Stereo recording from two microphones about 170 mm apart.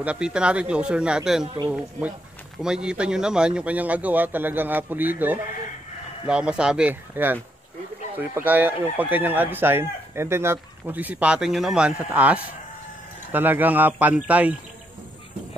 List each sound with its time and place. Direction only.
0.0 s a man's voice: 5° right (ahead or behind)
1.4 s a man's voice: 25° right (ahead or behind)
1.7 s speech: 10° right (ahead or behind)